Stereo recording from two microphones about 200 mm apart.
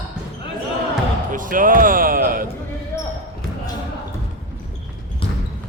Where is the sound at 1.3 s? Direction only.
40° right (ahead or behind).